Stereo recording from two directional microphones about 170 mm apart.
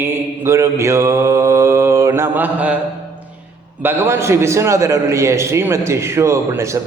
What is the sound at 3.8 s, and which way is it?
A man's voice, 15° right (ahead or behind).